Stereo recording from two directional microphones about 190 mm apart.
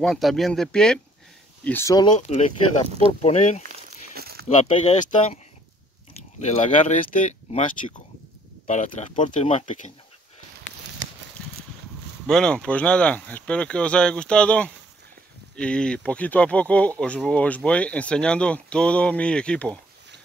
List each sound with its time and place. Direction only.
0.0 s speech: centre (ahead or behind); by 2.1 s 20° left (ahead or behind)
2.1 s speech: 35° left (ahead or behind)
3.6 s walk: 55° right (ahead or behind)
6.4 s speech: 40° left (ahead or behind)
12.3 s speech: 5° left (ahead or behind)